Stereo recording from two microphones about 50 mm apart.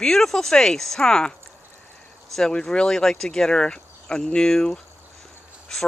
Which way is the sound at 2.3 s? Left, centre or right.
Centre.